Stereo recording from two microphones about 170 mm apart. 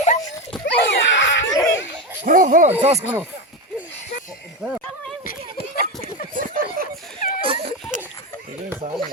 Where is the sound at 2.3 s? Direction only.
50° right (ahead or behind).